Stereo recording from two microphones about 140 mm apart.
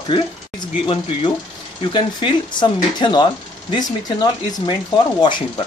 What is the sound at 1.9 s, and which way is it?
Speech, 35° left (ahead or behind).